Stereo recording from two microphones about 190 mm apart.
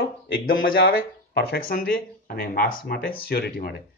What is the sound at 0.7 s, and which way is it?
Speech, 50° left (ahead or behind).